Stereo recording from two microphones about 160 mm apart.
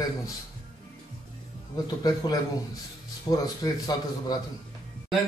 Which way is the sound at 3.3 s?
25° left (ahead or behind).